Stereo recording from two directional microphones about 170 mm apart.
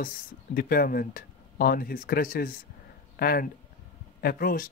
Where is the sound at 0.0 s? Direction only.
55° left (ahead or behind).